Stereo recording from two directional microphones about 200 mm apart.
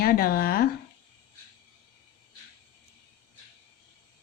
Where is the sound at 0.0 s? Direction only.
50° left (ahead or behind).